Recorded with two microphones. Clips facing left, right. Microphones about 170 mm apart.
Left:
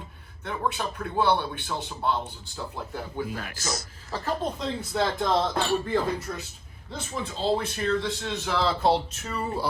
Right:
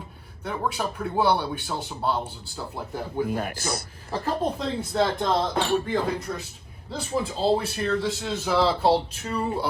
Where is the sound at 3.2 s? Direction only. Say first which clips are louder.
Right 7 dB; 50° right (ahead or behind).